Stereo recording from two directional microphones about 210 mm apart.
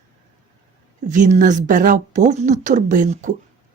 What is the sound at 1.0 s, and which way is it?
Speech, 35° right (ahead or behind).